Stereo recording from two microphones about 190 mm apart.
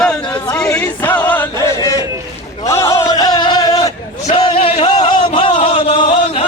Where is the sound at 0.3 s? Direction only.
15° left (ahead or behind).